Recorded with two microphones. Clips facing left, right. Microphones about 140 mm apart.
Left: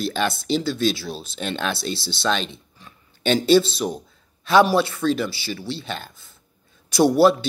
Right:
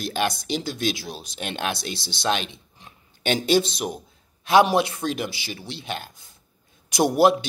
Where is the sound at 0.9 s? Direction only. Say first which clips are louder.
Left 4 dB; 15° right (ahead or behind).